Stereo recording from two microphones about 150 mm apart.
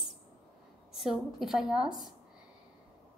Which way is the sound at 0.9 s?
Centre (ahead or behind).